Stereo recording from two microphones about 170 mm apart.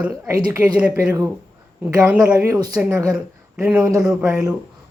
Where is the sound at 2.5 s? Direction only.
25° right (ahead or behind).